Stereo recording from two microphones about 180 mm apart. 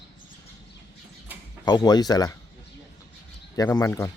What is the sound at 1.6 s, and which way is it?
Speech, 25° left (ahead or behind).